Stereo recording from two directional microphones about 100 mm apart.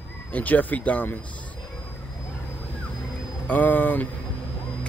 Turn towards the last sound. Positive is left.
turn(degrees=15)  # may be behind; listen again after turning